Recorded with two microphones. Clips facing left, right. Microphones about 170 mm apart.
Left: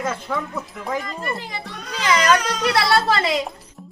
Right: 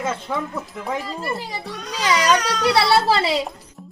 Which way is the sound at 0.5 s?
10° right (ahead or behind).